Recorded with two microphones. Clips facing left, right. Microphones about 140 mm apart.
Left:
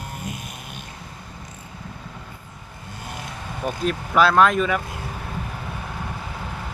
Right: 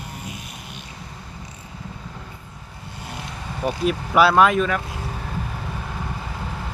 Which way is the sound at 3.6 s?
5° right (ahead or behind).